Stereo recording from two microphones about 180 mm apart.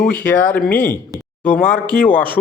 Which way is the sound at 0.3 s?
10° left (ahead or behind).